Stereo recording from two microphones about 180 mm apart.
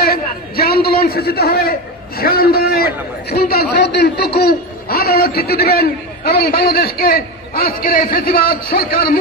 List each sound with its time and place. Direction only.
0.0 s a man's voice: 55° left (ahead or behind)